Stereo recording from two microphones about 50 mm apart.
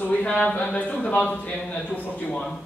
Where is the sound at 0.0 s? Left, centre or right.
Left.